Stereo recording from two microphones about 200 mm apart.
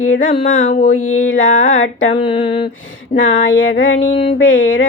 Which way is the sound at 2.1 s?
25° left (ahead or behind).